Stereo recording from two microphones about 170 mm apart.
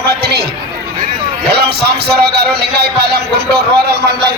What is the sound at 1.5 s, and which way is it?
A man's voice, 70° right (ahead or behind).